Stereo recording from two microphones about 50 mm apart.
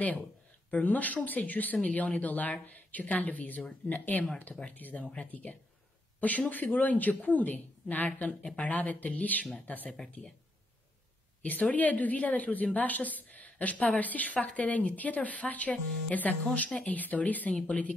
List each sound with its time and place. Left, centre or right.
0.7 s a woman's voice: left
5.1 s a woman's voice: left
8.3 s a woman's voice: left
11.4 s a woman's voice: left